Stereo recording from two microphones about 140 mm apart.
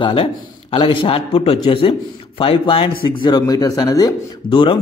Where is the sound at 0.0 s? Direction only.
40° left (ahead or behind).